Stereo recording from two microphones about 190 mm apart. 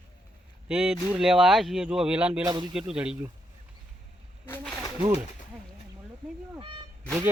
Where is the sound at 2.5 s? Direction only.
25° right (ahead or behind).